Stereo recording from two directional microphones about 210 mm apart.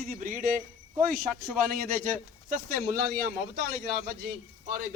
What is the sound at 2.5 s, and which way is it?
Speech, 45° right (ahead or behind).